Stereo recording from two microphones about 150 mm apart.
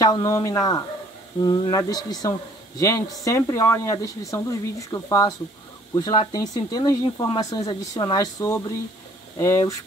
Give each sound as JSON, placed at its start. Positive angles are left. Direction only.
{"t": 0.0, "sound": "speech", "side_deg": 25}